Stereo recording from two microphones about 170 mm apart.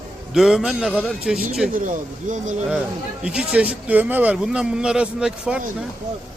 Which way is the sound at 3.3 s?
5° right (ahead or behind).